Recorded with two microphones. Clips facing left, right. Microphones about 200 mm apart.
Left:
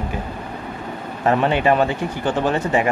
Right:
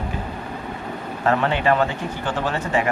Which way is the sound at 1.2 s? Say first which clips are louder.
Left 3 dB; 20° left (ahead or behind).